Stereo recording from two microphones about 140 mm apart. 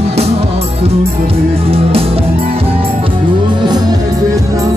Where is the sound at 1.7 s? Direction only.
45° right (ahead or behind).